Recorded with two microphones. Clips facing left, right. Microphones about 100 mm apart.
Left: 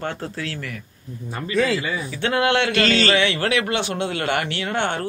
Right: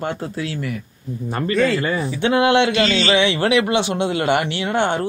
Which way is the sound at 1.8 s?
50° right (ahead or behind).